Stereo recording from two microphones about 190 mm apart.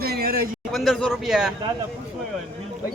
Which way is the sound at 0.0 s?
55° right (ahead or behind).